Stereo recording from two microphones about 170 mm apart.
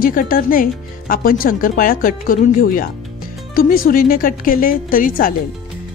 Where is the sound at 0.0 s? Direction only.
60° left (ahead or behind).